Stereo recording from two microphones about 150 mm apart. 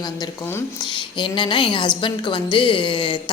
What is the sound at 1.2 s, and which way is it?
A woman's voice, 35° left (ahead or behind).